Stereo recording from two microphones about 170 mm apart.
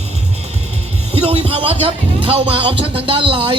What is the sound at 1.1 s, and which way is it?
A man's voice, 35° right (ahead or behind).